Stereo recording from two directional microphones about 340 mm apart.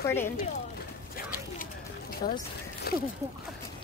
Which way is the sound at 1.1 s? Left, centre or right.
Left.